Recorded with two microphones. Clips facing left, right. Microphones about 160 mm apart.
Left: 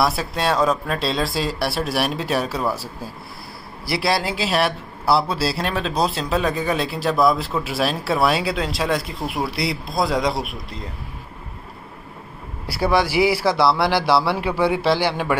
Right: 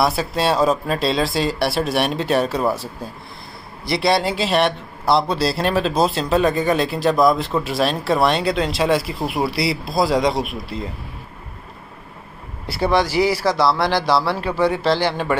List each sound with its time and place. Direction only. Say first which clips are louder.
0.0 s a man's voice: right 2 dB; centre (ahead or behind)
0.5 s speech: right 1 dB; 30° right (ahead or behind)
0.8 s a man's voice: right 3 dB; centre (ahead or behind)
12.7 s a man's voice: right 1 dB; 5° left (ahead or behind)